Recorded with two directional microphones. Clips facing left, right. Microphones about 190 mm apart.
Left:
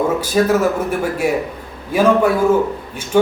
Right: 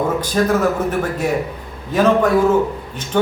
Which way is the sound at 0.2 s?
10° left (ahead or behind).